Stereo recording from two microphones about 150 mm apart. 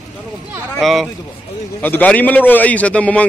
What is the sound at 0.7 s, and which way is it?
A man's voice, centre (ahead or behind).